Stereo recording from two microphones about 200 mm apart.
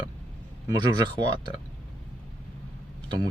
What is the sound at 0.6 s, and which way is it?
Speech, 20° right (ahead or behind).